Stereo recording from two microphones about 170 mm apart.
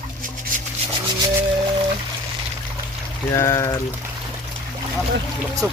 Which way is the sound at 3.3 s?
15° left (ahead or behind).